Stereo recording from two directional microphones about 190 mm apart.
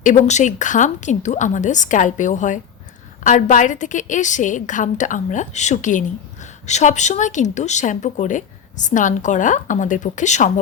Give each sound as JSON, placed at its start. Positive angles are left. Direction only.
{"t": 0.0, "sound": "speech", "side_deg": 40}